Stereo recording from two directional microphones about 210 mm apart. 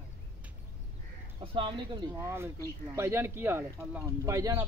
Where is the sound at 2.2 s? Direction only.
10° right (ahead or behind).